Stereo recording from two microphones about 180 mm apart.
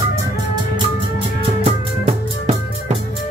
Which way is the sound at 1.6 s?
35° right (ahead or behind).